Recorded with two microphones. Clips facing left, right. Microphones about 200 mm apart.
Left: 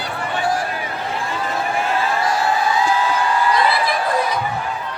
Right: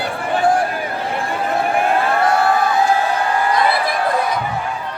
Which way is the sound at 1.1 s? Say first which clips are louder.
Right 4 dB; 55° right (ahead or behind).